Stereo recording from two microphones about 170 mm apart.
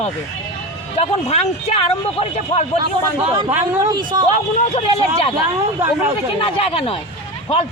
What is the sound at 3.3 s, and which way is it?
Speech, 30° right (ahead or behind).